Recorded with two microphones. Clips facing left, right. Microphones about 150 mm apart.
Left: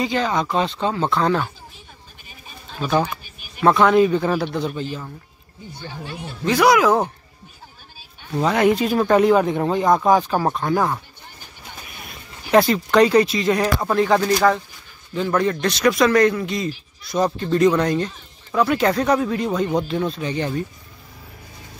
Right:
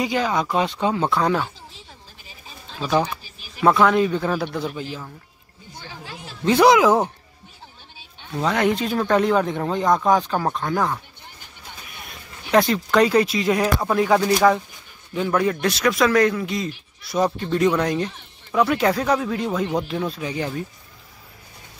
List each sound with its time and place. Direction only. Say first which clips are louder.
0.0 s speech: left 1 dB; 10° right (ahead or behind)
3.6 s speech: left 2 dB; centre (ahead or behind)
6.4 s speech: right 1 dB; 25° right (ahead or behind)
8.4 s speech: left 3 dB; 5° left (ahead or behind)
12.4 s speech: left 2 dB; 5° left (ahead or behind)